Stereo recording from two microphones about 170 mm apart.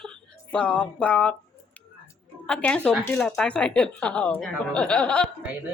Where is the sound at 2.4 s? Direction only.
5° left (ahead or behind).